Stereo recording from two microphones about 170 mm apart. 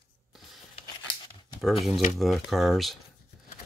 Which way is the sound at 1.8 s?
45° left (ahead or behind).